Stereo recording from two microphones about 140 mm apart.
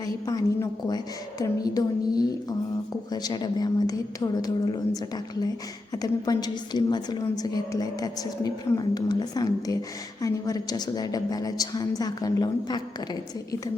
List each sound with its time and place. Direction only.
0.0 s a woman's voice: 25° left (ahead or behind)